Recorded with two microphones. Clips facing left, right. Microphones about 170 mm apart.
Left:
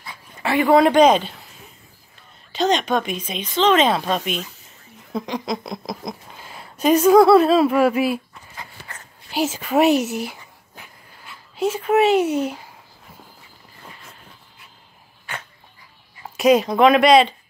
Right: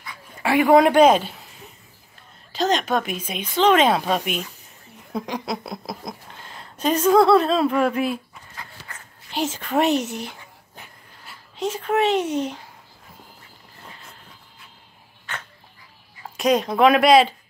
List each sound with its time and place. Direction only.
0.4 s speech: 10° right (ahead or behind)
2.5 s speech: centre (ahead or behind)
6.3 s speech: 10° left (ahead or behind)
8.8 s a sound: 55° left (ahead or behind)
9.3 s speech: 10° left (ahead or behind)
11.5 s speech: 5° left (ahead or behind)
15.3 s dog: 10° left (ahead or behind)
16.3 s speech: 5° left (ahead or behind)